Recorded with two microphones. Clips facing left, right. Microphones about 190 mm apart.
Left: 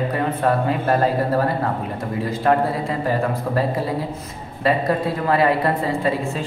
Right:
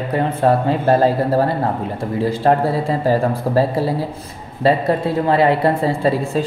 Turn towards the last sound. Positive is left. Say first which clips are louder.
# right 4 dB
turn(degrees=-30)  # may be behind; listen again after turning